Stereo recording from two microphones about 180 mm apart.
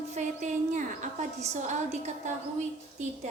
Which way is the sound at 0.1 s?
40° right (ahead or behind).